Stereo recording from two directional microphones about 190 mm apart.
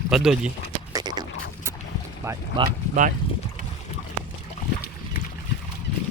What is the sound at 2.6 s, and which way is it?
Speech, 45° right (ahead or behind).